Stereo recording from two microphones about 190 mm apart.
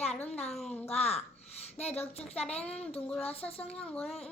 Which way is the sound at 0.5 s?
5° left (ahead or behind).